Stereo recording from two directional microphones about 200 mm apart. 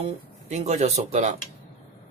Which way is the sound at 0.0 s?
35° right (ahead or behind).